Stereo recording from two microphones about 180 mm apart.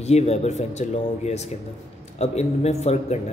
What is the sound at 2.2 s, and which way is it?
Speech, 35° left (ahead or behind).